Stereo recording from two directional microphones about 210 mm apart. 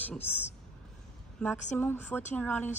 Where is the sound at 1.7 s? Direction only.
10° left (ahead or behind).